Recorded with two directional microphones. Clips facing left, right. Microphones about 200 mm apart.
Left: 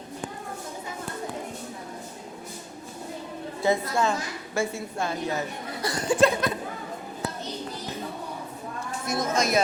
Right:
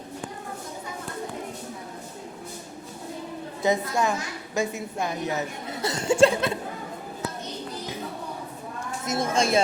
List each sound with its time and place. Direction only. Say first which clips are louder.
3.6 s a woman's voice: even; 15° right (ahead or behind)
9.0 s a woman's voice: right 1 dB; 30° right (ahead or behind)